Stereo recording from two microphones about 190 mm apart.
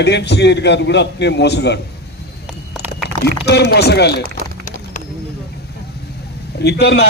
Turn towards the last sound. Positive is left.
turn(degrees=60)  # may be behind; listen again after turning